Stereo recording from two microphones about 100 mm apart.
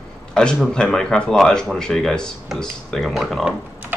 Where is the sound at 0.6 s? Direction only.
5° left (ahead or behind).